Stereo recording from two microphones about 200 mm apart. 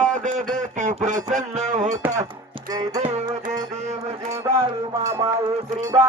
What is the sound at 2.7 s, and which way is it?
Music, 20° right (ahead or behind).